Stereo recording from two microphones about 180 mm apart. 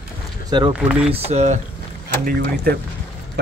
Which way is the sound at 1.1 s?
35° right (ahead or behind).